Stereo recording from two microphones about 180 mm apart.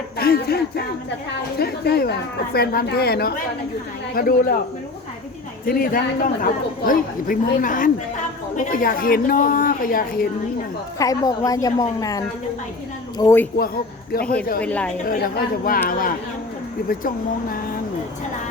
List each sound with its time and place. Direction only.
0.2 s a woman's voice: 60° left (ahead or behind)
5.6 s a man's voice: 50° left (ahead or behind)
10.9 s a woman's voice: 20° left (ahead or behind)
14.1 s a woman's voice: 55° left (ahead or behind)
14.6 s speech: 5° left (ahead or behind)
15.9 s a man's voice: 50° left (ahead or behind)